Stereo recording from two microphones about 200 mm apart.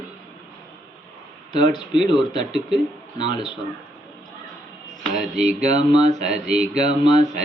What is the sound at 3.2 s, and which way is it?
Mantra, 25° left (ahead or behind).